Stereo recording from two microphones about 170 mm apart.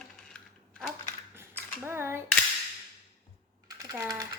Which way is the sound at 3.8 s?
20° right (ahead or behind).